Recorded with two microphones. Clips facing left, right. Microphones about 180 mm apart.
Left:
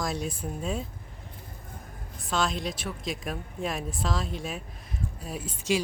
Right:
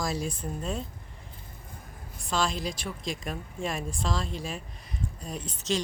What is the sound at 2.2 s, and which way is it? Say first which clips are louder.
Speech: left 1 dB; centre (ahead or behind).